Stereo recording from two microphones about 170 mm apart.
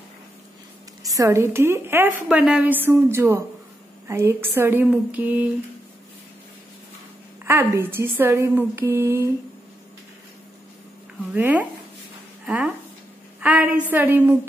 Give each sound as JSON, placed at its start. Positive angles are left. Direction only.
{"t": 1.0, "sound": "a woman's voice", "side_deg": -20}
{"t": 7.4, "sound": "a woman's voice", "side_deg": -10}
{"t": 11.3, "sound": "a woman's voice", "side_deg": -10}
{"t": 13.4, "sound": "a sound", "side_deg": -10}
{"t": 13.8, "sound": "a woman's voice", "side_deg": -10}